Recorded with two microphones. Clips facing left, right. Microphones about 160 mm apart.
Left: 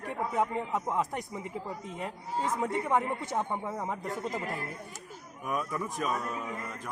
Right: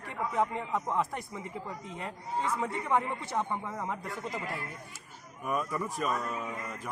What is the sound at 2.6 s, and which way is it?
Speech, 15° left (ahead or behind).